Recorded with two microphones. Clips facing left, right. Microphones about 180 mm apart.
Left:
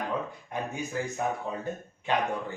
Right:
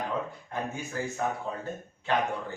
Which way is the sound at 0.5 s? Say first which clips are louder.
Even; 15° left (ahead or behind).